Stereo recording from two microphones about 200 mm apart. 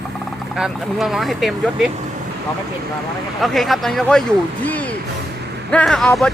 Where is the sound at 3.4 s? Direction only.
Centre (ahead or behind).